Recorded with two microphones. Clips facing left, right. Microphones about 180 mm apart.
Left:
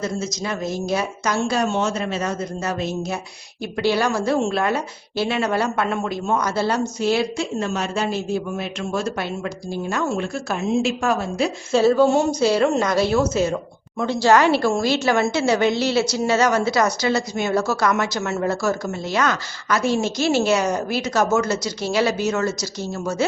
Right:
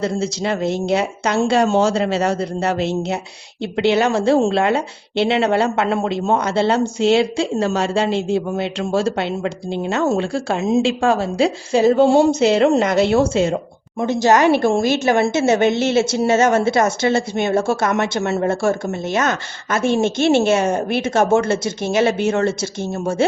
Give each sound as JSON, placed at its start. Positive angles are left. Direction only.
{"t": 0.2, "sound": "speech", "side_deg": -30}
{"t": 2.0, "sound": "a man's voice", "side_deg": -75}
{"t": 3.6, "sound": "speech", "side_deg": -25}
{"t": 11.7, "sound": "a sound", "side_deg": -20}
{"t": 12.0, "sound": "speech", "side_deg": -30}